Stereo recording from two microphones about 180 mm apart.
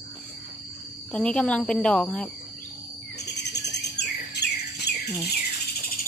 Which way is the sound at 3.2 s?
70° left (ahead or behind).